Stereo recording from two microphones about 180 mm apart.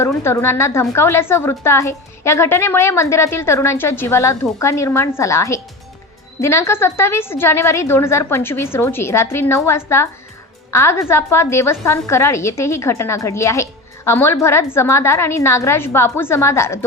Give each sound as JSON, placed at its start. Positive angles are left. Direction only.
{"t": 0.0, "sound": "a woman's voice", "side_deg": 15}